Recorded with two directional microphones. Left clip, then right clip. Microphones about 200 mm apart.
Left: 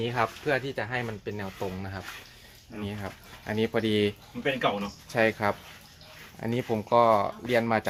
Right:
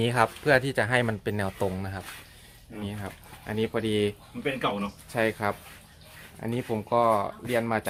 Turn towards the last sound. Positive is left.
turn(degrees=10)  # may be behind; listen again after turning